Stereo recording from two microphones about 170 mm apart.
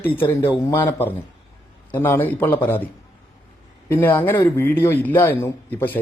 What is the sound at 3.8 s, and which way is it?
A man's voice, 10° left (ahead or behind).